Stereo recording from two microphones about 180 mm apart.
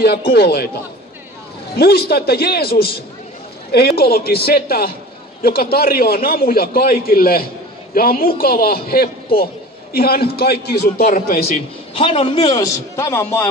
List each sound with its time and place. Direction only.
0.0 s a man's voice: 65° left (ahead or behind)
1.8 s a man's voice: 60° left (ahead or behind)
12.0 s a man's voice: 30° left (ahead or behind); by 13.5 s 10° left (ahead or behind)